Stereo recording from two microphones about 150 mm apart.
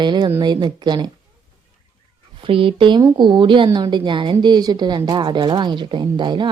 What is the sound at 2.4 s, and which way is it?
A woman's voice, 35° right (ahead or behind).